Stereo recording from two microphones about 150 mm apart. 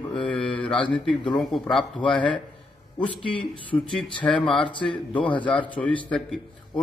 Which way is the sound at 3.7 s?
10° left (ahead or behind).